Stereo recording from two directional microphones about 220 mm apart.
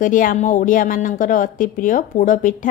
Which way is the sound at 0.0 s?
35° left (ahead or behind).